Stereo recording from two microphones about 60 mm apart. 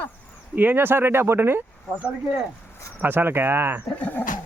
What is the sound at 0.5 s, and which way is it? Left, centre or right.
Speech, right.